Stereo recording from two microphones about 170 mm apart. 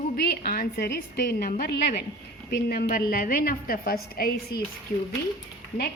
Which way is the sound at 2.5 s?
65° left (ahead or behind).